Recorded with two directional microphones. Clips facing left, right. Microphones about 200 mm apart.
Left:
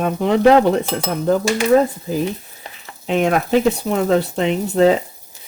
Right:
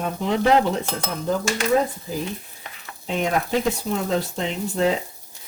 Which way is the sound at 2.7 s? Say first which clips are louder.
Left 4 dB; 35° left (ahead or behind).